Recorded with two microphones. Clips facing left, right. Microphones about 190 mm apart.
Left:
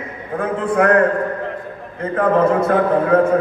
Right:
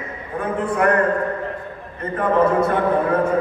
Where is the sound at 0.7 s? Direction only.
90° left.